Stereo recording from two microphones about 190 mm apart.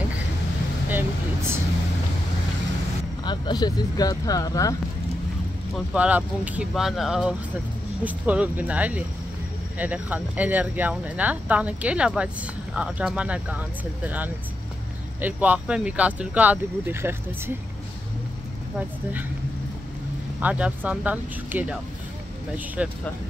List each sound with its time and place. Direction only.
0.8 s vehicle: 10° right (ahead or behind)
3.3 s speech: 20° left (ahead or behind)
5.9 s speech: 10° right (ahead or behind)
20.3 s speech: 5° right (ahead or behind)
22.8 s speech: 5° right (ahead or behind)